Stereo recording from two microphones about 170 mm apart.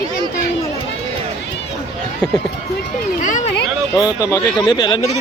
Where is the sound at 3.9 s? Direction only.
20° left (ahead or behind).